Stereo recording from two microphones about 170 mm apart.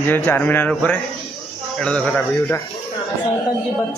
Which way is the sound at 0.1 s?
10° left (ahead or behind).